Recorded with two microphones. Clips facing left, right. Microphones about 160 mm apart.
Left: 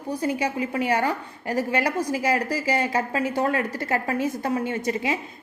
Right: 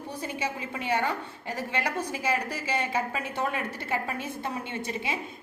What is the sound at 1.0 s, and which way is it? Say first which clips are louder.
Speech: left 5 dB; 90° left.